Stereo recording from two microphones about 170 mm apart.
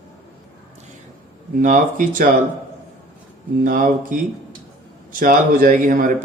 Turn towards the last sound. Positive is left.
turn(degrees=-50)  # may be behind; listen again after turning